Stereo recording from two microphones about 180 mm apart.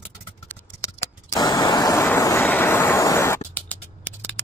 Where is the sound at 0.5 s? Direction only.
10° left (ahead or behind).